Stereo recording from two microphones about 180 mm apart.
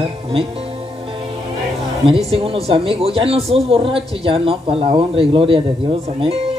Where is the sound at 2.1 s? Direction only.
35° right (ahead or behind).